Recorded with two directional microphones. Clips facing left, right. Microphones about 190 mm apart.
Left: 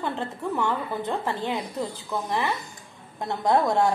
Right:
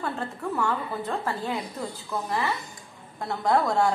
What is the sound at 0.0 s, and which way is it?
A woman's voice, 20° left (ahead or behind).